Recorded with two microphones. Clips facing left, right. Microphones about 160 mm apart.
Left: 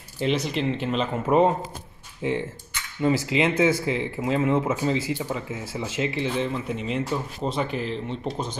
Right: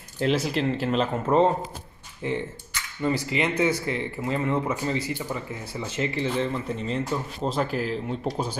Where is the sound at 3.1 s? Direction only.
90° left.